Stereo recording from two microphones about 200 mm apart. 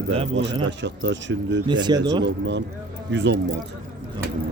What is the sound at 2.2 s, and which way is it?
Speech, 65° right (ahead or behind).